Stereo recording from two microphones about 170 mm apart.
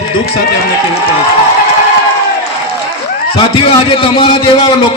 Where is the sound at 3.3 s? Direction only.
30° left (ahead or behind).